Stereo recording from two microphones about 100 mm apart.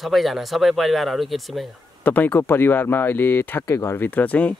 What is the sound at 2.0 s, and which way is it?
Speech, 15° left (ahead or behind).